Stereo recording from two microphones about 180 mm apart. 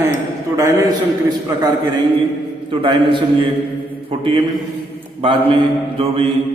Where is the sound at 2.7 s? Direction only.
25° right (ahead or behind).